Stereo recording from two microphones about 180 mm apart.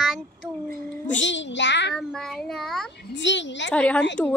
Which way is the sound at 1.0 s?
90° left.